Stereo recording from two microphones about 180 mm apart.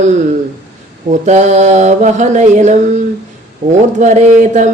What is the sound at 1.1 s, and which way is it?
Mantra, 40° right (ahead or behind).